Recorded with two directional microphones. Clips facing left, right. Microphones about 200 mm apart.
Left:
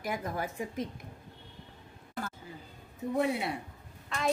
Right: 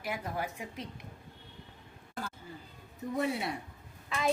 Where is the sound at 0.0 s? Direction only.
45° left (ahead or behind).